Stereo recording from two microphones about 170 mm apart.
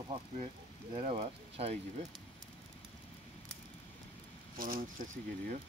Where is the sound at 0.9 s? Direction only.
35° right (ahead or behind).